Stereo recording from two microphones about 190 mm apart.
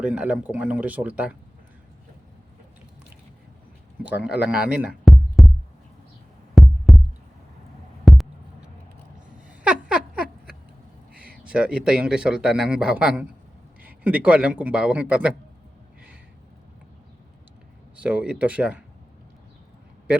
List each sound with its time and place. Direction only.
0.0 s a man's voice: 5° right (ahead or behind)
4.0 s speech: 5° right (ahead or behind)
6.5 s music: centre (ahead or behind)
8.0 s heart sounds: centre (ahead or behind)
9.5 s a sound: 5° right (ahead or behind)
11.4 s a man's voice: 5° right (ahead or behind)
18.0 s a man's voice: 5° right (ahead or behind)